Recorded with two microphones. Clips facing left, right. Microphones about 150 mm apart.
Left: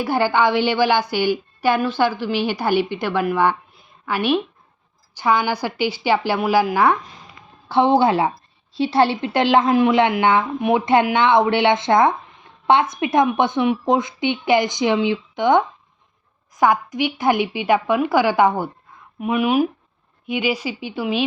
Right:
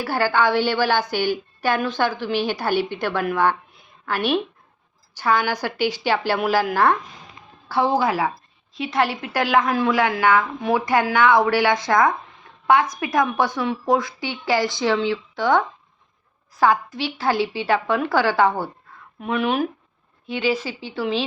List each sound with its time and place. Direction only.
0.0 s a woman's voice: 15° left (ahead or behind)
7.7 s a woman's voice: 25° left (ahead or behind)